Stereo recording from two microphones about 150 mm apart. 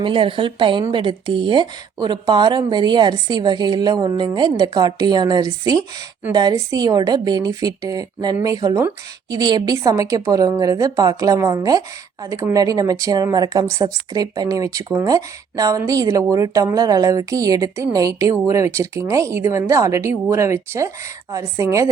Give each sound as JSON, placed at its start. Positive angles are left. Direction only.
{"t": 0.0, "sound": "a woman's voice", "side_deg": -35}